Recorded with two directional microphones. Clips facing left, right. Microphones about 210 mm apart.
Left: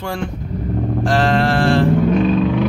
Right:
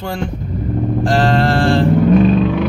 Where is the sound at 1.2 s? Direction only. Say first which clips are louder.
Right 1 dB; 35° right (ahead or behind).